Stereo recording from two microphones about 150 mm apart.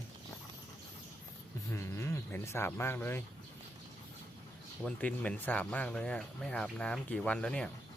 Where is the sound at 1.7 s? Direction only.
15° left (ahead or behind).